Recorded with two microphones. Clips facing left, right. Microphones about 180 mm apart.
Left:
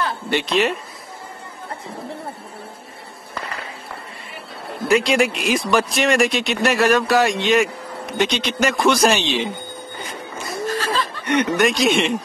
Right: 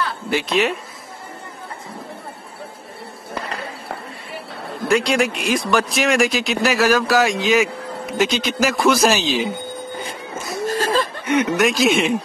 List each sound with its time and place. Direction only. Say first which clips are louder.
0.3 s speech: even; centre (ahead or behind)
4.8 s speech: left 1 dB; centre (ahead or behind)
10.7 s chuckle: right 4 dB; 45° right (ahead or behind)
11.2 s speech: left 1 dB; centre (ahead or behind)